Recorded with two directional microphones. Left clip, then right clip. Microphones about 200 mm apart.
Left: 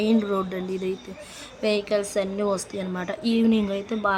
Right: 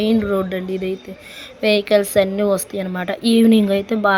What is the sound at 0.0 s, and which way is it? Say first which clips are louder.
A woman's voice: right 5 dB; 10° right (ahead or behind).